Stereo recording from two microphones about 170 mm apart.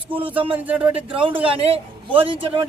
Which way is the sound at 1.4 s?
35° right (ahead or behind).